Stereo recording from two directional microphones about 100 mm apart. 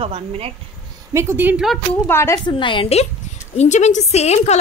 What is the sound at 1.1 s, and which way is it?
Speech, 25° right (ahead or behind).